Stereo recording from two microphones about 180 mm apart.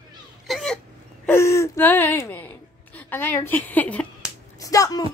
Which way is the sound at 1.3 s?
15° left (ahead or behind).